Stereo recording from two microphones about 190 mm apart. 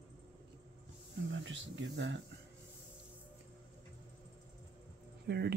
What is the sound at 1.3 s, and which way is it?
Speech, 75° right (ahead or behind).